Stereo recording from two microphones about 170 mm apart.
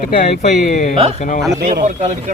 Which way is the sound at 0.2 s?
50° left (ahead or behind).